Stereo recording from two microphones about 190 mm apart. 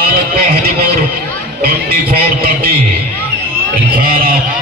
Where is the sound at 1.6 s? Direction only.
50° right (ahead or behind).